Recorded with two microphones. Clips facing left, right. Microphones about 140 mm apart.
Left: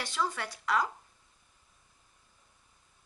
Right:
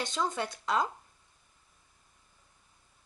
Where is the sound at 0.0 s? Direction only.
20° right (ahead or behind).